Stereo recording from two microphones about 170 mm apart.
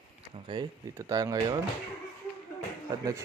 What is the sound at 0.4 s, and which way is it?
Speech, 25° right (ahead or behind).